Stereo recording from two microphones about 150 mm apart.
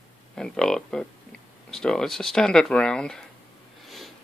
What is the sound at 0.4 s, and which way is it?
Speech, 5° left (ahead or behind).